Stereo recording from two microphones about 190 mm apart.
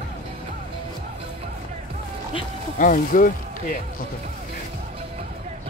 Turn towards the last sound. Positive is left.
turn(degrees=45)  # may be behind; listen again after turning